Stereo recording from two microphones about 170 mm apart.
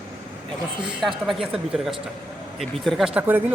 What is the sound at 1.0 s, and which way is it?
Speech, centre (ahead or behind).